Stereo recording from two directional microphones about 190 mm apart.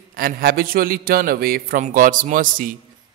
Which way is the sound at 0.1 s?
50° right (ahead or behind).